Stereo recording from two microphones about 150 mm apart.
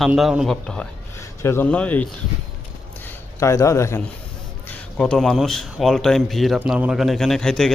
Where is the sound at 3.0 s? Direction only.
20° left (ahead or behind).